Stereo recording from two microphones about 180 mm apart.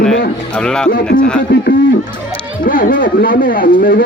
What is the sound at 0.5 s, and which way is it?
Speech, 5° left (ahead or behind).